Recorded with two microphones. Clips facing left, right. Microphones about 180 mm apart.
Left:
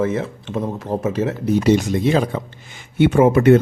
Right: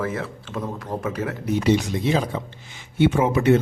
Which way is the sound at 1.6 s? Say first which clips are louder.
Left 3 dB; 50° left (ahead or behind).